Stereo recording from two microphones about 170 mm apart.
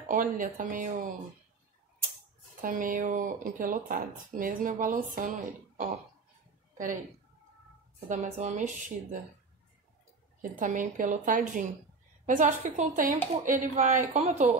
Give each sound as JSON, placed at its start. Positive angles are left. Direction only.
{"t": 0.0, "sound": "speech", "side_deg": -50}
{"t": 2.6, "sound": "speech", "side_deg": -55}
{"t": 8.1, "sound": "speech", "side_deg": -45}
{"t": 10.4, "sound": "speech", "side_deg": -50}